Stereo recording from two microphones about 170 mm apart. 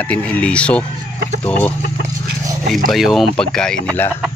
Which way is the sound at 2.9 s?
Centre (ahead or behind).